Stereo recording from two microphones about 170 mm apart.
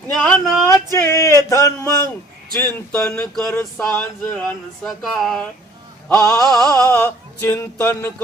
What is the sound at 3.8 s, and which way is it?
Speech, 5° left (ahead or behind).